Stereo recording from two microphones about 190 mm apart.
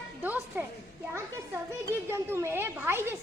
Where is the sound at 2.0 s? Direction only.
15° right (ahead or behind).